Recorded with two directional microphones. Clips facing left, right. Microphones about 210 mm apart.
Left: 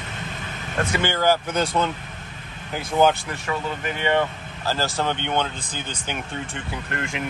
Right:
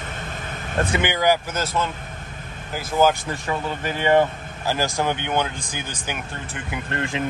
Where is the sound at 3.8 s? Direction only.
35° right (ahead or behind).